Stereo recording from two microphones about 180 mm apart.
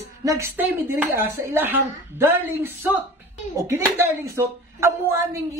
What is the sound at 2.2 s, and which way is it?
A man's voice, 15° right (ahead or behind).